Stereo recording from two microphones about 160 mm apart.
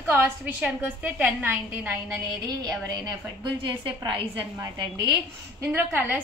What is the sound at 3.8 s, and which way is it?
Speech, 30° right (ahead or behind).